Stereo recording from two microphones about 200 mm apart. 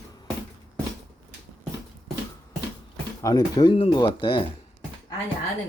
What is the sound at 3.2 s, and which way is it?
Speech, 20° left (ahead or behind).